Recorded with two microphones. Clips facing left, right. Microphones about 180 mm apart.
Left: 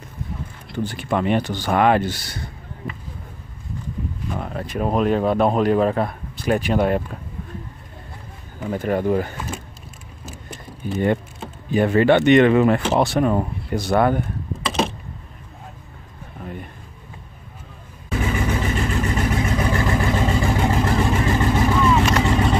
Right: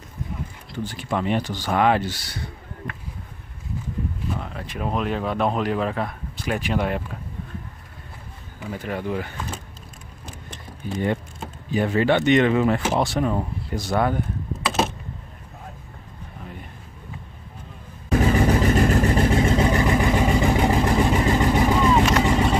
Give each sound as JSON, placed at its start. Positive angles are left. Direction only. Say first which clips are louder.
{"t": 0.8, "sound": "speech", "louder": "left 3 dB", "side_deg": 60}
{"t": 4.4, "sound": "speech", "louder": "left 5 dB", "side_deg": 45}
{"t": 8.5, "sound": "speech", "louder": "left 7 dB", "side_deg": 45}
{"t": 11.7, "sound": "speech", "louder": "left 4 dB", "side_deg": 60}
{"t": 18.2, "sound": "vehicle", "louder": "right 4 dB", "side_deg": -35}
{"t": 19.7, "sound": "vehicle", "louder": "right 1 dB", "side_deg": -20}